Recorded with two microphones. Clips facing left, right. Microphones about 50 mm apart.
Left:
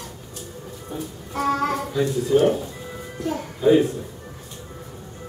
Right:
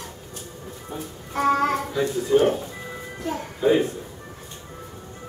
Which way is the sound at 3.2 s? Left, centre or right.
Centre.